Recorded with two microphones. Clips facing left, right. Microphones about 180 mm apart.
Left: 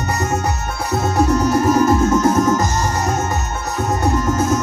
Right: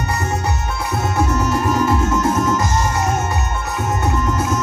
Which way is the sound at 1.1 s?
40° left (ahead or behind).